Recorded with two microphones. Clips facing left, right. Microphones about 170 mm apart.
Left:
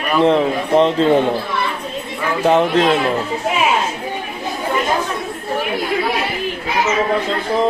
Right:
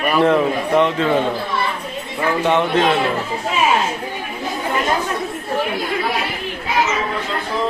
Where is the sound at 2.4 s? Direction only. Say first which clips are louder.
Left 4 dB; 35° left (ahead or behind).